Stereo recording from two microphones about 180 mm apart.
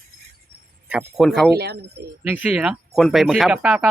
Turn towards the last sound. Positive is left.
turn(degrees=-5)  # may be behind; listen again after turning